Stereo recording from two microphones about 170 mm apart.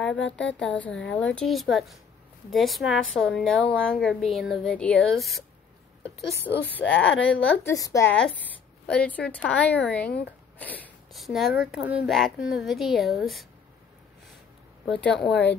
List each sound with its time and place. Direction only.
0.2 s speech: 90° left
0.6 s a woman's voice: 5° left (ahead or behind)
6.5 s speech: 10° right (ahead or behind)
6.8 s speech: 10° left (ahead or behind)
7.6 s a woman's voice: 20° left (ahead or behind)
8.8 s a woman's voice: 5° left (ahead or behind)
15.0 s a woman's voice: 5° left (ahead or behind)